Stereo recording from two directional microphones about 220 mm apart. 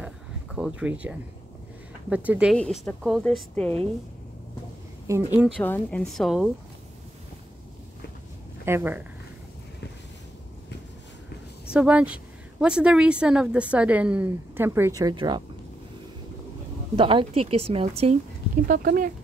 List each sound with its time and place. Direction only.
0.6 s speech: 5° right (ahead or behind)
2.5 s speech: 5° left (ahead or behind)
5.0 s speech: 10° right (ahead or behind)
5.6 s speech: 5° left (ahead or behind)
8.6 s speech: 10° right (ahead or behind)
11.7 s speech: 5° right (ahead or behind)
16.9 s a woman's voice: 25° right (ahead or behind)
18.7 s speech: 40° right (ahead or behind)